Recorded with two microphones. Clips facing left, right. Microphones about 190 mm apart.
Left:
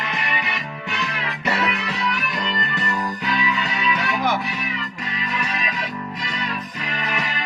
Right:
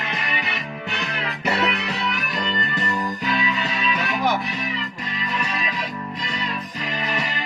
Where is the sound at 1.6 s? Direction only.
30° right (ahead or behind).